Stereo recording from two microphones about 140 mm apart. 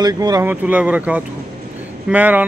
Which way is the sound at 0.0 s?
30° right (ahead or behind).